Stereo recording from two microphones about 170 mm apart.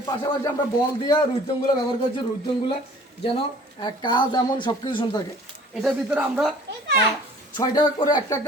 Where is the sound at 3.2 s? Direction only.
30° left (ahead or behind).